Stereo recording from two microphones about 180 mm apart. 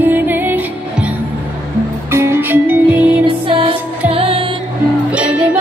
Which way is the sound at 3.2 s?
30° right (ahead or behind).